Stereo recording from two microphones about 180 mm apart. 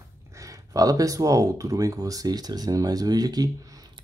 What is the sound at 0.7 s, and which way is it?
Speech, 20° right (ahead or behind).